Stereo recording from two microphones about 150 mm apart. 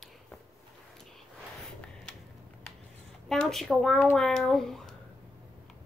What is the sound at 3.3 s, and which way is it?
A child's voice, centre (ahead or behind).